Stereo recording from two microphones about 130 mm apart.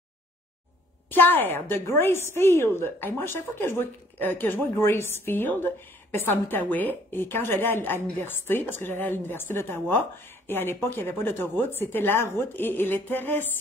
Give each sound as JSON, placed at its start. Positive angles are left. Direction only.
{"t": 1.1, "sound": "a woman's voice", "side_deg": 15}